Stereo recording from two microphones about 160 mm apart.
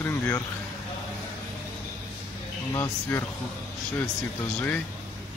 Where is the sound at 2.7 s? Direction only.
15° left (ahead or behind).